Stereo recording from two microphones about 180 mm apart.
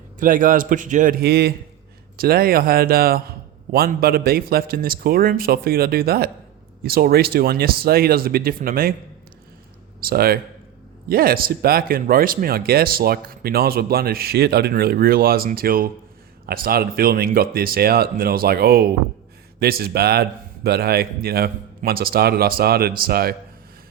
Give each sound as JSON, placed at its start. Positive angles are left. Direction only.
{"t": 0.2, "sound": "a man's voice", "side_deg": -50}
{"t": 10.0, "sound": "speech", "side_deg": -55}